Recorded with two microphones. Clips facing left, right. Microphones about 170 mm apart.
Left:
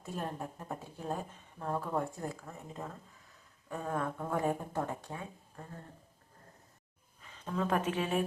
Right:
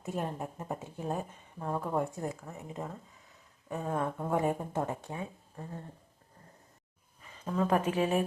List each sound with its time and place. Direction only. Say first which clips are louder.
0.0 s speech: right 3 dB; 15° right (ahead or behind)
7.2 s a woman's voice: right 4 dB; 5° right (ahead or behind)